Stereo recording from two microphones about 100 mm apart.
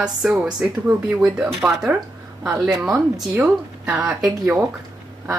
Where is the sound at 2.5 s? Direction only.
Centre (ahead or behind).